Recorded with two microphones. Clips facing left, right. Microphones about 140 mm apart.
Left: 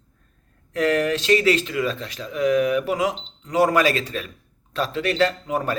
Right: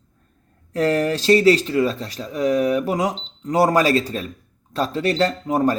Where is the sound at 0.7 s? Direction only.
35° right (ahead or behind).